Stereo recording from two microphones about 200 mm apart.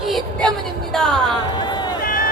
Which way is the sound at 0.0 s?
Centre (ahead or behind).